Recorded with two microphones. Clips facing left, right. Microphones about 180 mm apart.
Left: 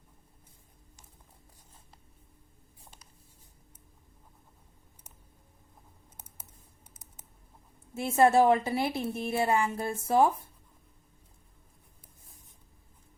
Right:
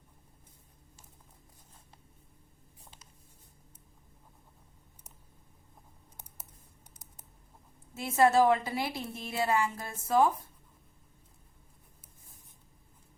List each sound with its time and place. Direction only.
7.9 s a woman's voice: 30° left (ahead or behind)